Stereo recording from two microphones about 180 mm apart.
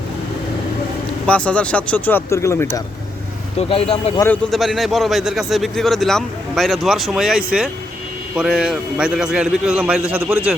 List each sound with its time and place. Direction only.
1.3 s speech: 5° left (ahead or behind)
3.6 s speech: 35° left (ahead or behind)
4.5 s a man's voice: centre (ahead or behind)